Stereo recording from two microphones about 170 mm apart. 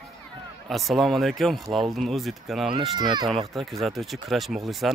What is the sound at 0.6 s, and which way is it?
Speech, centre (ahead or behind).